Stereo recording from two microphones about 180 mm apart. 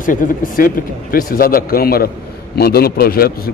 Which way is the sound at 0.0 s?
50° left (ahead or behind).